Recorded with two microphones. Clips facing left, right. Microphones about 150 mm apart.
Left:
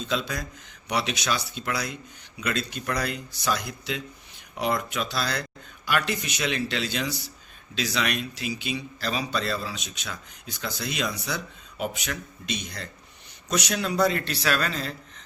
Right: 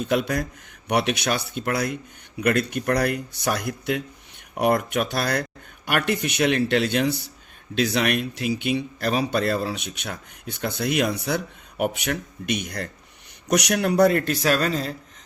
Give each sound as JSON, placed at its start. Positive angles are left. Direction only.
{"t": 0.0, "sound": "speech", "side_deg": -60}